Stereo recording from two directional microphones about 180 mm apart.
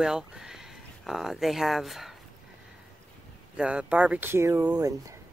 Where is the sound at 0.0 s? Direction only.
5° right (ahead or behind).